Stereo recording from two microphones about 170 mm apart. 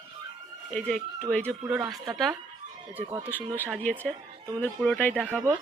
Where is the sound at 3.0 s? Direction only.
15° right (ahead or behind).